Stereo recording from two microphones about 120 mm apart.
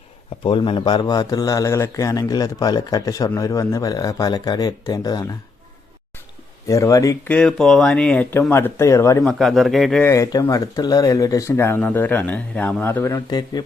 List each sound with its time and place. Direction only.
0.4 s speech: 45° left (ahead or behind)
6.7 s speech: 25° left (ahead or behind)
7.3 s speech: 5° left (ahead or behind); by 9.2 s 25° left (ahead or behind)
9.2 s speech: centre (ahead or behind)
10.0 s speech: 25° left (ahead or behind)